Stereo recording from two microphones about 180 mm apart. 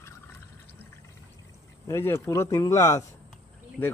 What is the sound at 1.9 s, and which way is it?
Speech, 15° left (ahead or behind).